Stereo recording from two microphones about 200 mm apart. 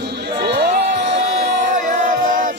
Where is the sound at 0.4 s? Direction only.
55° right (ahead or behind).